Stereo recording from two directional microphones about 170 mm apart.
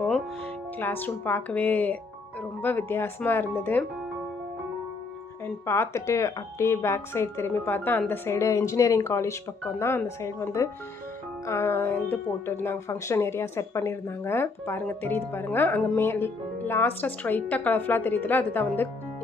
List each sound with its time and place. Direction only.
0.7 s speech: 10° left (ahead or behind)
5.7 s speech: 15° left (ahead or behind)